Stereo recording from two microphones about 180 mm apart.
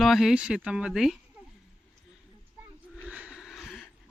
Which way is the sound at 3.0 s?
5° right (ahead or behind).